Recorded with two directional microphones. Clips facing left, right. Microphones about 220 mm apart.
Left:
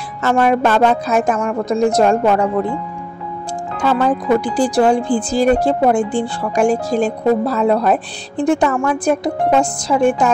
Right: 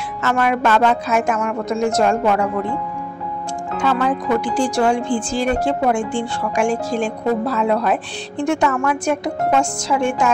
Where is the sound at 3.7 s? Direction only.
35° left (ahead or behind).